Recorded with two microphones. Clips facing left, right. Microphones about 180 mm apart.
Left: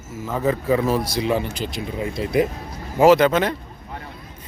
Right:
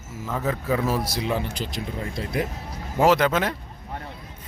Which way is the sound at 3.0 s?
Centre (ahead or behind).